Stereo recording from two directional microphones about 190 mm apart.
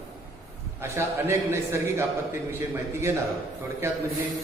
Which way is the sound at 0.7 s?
15° right (ahead or behind).